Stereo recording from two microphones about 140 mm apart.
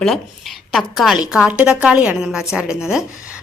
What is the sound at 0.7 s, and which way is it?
A woman's voice, centre (ahead or behind).